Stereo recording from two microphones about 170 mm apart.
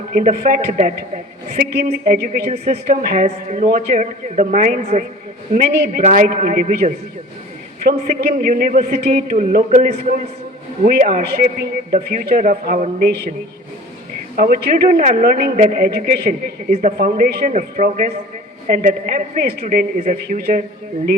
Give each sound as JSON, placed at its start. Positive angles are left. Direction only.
{"t": 0.1, "sound": "a man's voice", "side_deg": -55}
{"t": 2.5, "sound": "speech", "side_deg": -40}
{"t": 2.9, "sound": "a man's voice", "side_deg": -55}
{"t": 3.2, "sound": "a man's voice", "side_deg": -45}
{"t": 5.5, "sound": "a man's voice", "side_deg": -60}
{"t": 14.3, "sound": "a man's voice", "side_deg": -60}
{"t": 16.7, "sound": "a man's voice", "side_deg": -50}
{"t": 19.6, "sound": "a man's voice", "side_deg": -50}